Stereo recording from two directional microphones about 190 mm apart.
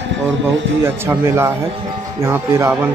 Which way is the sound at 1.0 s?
15° right (ahead or behind).